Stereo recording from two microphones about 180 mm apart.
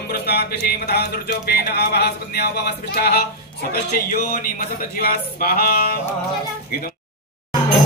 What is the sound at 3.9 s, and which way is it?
Music, 55° left (ahead or behind).